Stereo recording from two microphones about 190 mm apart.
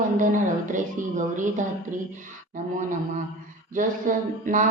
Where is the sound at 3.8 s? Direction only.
45° right (ahead or behind).